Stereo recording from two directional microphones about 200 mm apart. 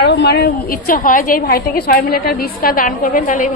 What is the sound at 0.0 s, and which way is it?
A woman's voice, 60° left (ahead or behind).